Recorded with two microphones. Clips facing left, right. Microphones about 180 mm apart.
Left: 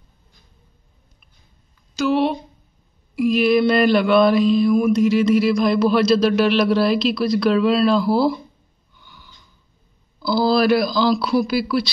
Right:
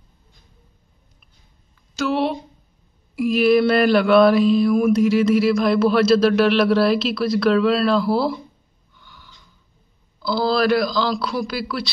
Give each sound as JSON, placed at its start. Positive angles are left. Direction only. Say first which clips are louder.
{"t": 2.0, "sound": "mantra", "louder": "left 2 dB", "side_deg": 0}
{"t": 10.2, "sound": "mantra", "louder": "left 2 dB", "side_deg": 5}